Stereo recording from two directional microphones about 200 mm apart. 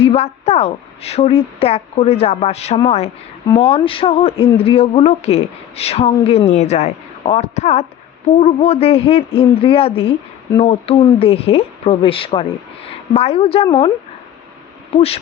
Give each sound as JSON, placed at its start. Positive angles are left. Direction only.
{"t": 0.0, "sound": "a woman's voice", "side_deg": 30}
{"t": 14.9, "sound": "speech", "side_deg": 30}